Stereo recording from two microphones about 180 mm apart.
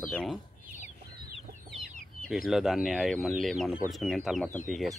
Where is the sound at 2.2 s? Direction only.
Centre (ahead or behind).